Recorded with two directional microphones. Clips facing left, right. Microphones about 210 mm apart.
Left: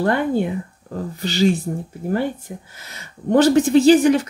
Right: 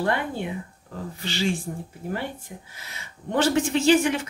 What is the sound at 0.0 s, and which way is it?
Speech, 45° left (ahead or behind).